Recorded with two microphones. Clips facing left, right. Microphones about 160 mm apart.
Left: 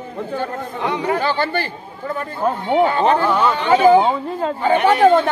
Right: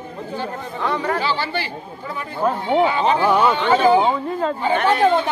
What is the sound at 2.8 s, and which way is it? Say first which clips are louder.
Speech: left 2 dB; 50° left (ahead or behind).